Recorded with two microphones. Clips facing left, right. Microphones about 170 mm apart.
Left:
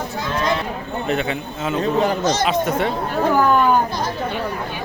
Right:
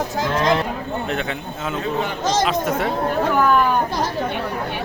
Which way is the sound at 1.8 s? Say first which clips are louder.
Left 6 dB; 40° left (ahead or behind).